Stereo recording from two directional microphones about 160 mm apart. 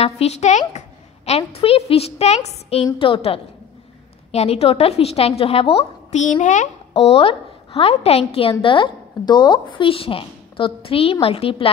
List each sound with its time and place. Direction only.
0.0 s a woman's voice: 40° left (ahead or behind)